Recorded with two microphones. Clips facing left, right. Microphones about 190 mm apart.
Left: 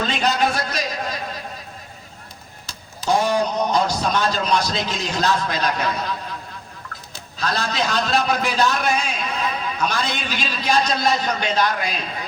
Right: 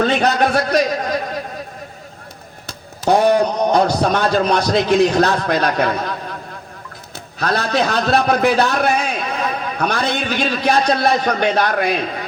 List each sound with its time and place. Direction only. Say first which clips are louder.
0.0 s a man's voice: right 5 dB; 60° right (ahead or behind)
2.6 s a man's voice: right 5 dB; 60° right (ahead or behind)
7.3 s a man's voice: right 6 dB; 60° right (ahead or behind)